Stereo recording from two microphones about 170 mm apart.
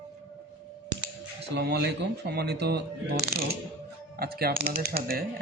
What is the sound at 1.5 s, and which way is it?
Speech, 80° right.